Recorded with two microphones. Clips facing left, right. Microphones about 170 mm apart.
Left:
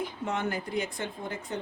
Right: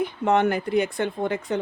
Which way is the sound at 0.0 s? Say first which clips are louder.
Right 10 dB; 65° right (ahead or behind).